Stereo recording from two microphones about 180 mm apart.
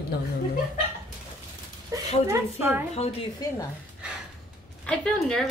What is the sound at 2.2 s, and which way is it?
Speech, 15° right (ahead or behind).